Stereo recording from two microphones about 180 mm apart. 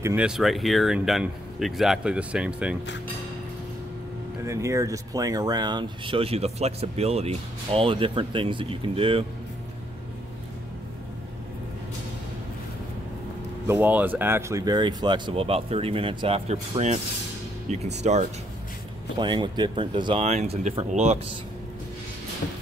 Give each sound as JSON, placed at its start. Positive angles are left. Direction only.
{"t": 0.0, "sound": "speech", "side_deg": -5}
{"t": 4.5, "sound": "speech", "side_deg": -15}
{"t": 13.7, "sound": "speech", "side_deg": -10}
{"t": 19.1, "sound": "speech", "side_deg": -25}